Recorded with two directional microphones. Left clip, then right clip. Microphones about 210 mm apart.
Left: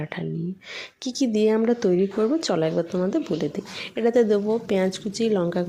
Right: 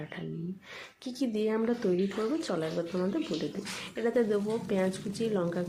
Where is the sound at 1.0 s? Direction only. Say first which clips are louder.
Left 10 dB; 35° left (ahead or behind).